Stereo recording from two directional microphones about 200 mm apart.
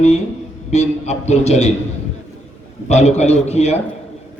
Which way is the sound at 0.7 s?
35° left (ahead or behind).